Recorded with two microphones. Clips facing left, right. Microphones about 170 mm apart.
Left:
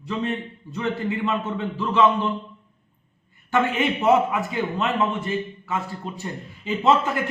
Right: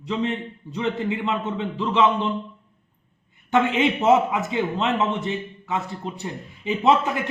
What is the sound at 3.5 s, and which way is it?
A man's voice, 20° right (ahead or behind).